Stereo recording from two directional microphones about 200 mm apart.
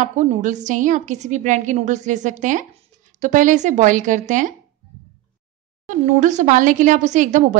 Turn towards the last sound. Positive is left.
turn(degrees=-40)  # may be behind; listen again after turning